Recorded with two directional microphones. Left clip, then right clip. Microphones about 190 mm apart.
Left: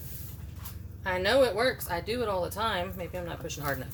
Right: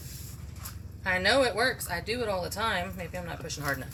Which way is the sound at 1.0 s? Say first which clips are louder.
Even; 20° left (ahead or behind).